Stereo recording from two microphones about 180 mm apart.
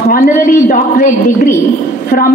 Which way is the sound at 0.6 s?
45° left (ahead or behind).